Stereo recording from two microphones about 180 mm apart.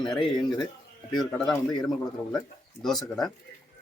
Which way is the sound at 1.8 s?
5° left (ahead or behind).